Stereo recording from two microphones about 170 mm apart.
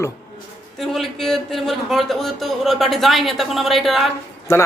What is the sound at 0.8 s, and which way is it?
A man's voice, centre (ahead or behind).